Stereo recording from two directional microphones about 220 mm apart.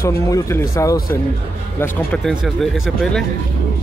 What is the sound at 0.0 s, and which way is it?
Speech, 10° left (ahead or behind).